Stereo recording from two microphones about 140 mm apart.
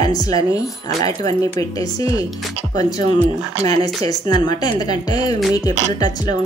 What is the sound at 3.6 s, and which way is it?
Speech, 30° left (ahead or behind).